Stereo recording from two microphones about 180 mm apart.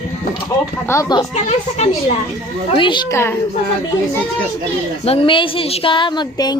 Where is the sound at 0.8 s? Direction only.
15° left (ahead or behind).